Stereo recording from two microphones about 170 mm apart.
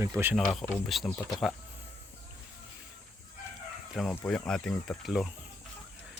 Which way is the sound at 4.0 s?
5° left (ahead or behind).